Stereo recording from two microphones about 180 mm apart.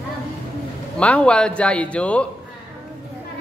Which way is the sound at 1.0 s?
5° left (ahead or behind).